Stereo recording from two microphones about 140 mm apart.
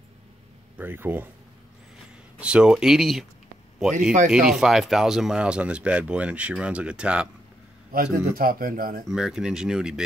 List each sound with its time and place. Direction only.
0.7 s speech: 15° right (ahead or behind)
2.3 s speech: 5° right (ahead or behind)
4.3 s speech: 5° right (ahead or behind)
7.9 s a man's voice: 90° right
9.1 s speech: 5° right (ahead or behind)